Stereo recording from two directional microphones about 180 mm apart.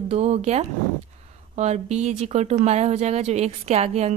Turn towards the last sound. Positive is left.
turn(degrees=-35)  # may be behind; listen again after turning